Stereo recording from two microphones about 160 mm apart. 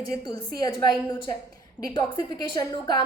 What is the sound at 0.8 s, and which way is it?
Speech, 25° left (ahead or behind).